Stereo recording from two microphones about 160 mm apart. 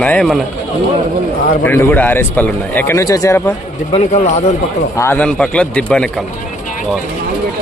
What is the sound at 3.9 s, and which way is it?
Speech, 45° left (ahead or behind).